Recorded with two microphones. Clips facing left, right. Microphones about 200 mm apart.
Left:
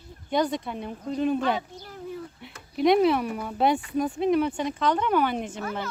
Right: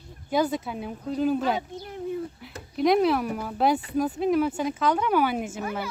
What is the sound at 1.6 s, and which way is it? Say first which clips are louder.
Speech: right 3 dB; 20° right (ahead or behind).